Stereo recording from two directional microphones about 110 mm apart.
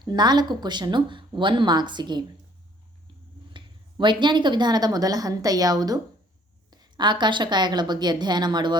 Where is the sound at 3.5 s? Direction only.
45° right (ahead or behind).